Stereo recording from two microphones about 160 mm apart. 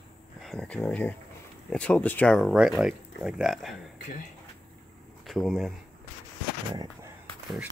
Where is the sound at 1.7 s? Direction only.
10° left (ahead or behind).